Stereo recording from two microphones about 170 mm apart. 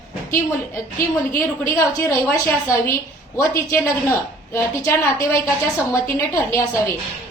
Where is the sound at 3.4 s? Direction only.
10° left (ahead or behind).